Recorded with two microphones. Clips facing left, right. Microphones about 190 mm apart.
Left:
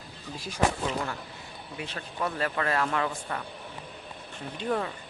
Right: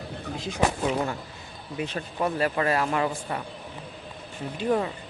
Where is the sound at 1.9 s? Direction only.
20° right (ahead or behind).